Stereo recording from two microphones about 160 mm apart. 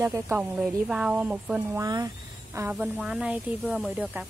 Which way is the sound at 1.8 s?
20° right (ahead or behind).